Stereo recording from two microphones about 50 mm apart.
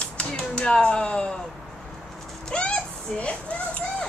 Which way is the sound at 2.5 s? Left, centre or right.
Left.